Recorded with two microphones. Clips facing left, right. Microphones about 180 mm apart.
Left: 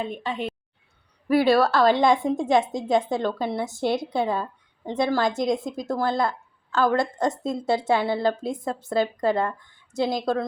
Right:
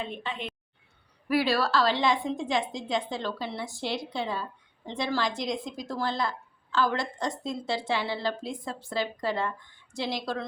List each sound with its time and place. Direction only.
0.0 s a woman's voice: 45° left (ahead or behind)
1.4 s a woman's voice: 55° left (ahead or behind)